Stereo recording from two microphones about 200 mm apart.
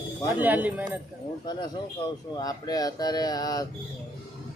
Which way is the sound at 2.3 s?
20° left (ahead or behind).